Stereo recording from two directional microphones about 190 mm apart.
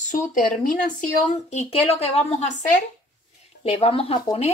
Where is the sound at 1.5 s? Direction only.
35° left (ahead or behind).